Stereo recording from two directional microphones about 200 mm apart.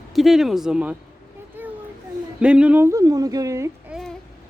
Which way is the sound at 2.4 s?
5° right (ahead or behind).